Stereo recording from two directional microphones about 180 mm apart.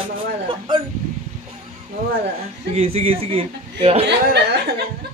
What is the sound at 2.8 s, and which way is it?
A man's voice, 35° right (ahead or behind).